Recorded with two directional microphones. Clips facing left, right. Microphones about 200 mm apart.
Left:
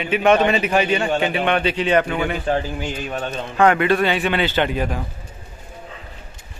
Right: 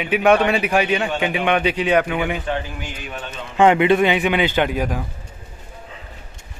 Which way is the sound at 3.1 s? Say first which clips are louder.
Left 6 dB; 40° left (ahead or behind).